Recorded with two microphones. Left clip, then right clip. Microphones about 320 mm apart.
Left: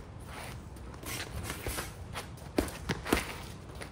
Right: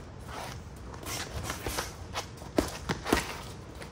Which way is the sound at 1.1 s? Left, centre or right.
Centre.